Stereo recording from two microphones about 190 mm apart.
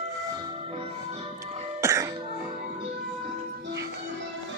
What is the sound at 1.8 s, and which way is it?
Music, 15° right (ahead or behind).